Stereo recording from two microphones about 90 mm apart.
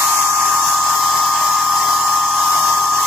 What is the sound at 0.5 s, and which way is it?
Hair dryer, 5° right (ahead or behind).